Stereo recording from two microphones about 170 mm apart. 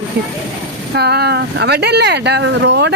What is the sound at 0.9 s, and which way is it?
Speech, 70° right (ahead or behind).